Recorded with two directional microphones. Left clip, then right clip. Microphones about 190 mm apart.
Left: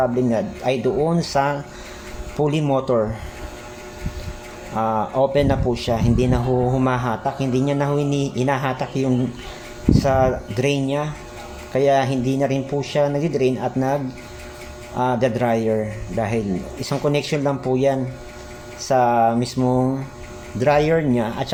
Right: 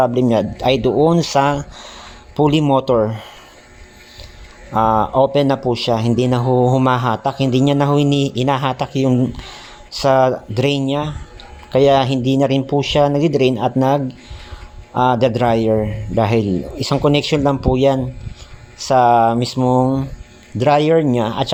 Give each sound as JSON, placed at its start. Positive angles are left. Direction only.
{"t": 0.0, "sound": "a man's voice", "side_deg": -45}
{"t": 4.7, "sound": "a man's voice", "side_deg": -40}